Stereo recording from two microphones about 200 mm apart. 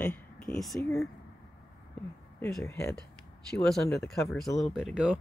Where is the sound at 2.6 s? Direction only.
15° left (ahead or behind).